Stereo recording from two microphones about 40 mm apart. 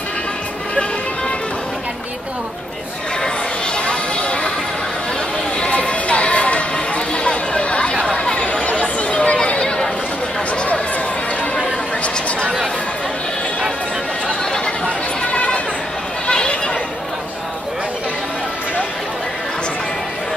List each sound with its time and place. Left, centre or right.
3.7 s a sound: left
5.6 s music: left
7.2 s chatter: left
8.5 s a sound: left
15.3 s bleat: left
16.3 s neigh: left